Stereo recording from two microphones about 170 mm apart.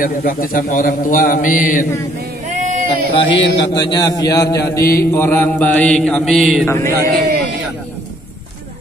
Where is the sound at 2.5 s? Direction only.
45° right (ahead or behind).